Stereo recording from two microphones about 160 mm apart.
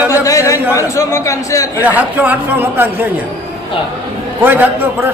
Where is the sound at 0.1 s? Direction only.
20° left (ahead or behind).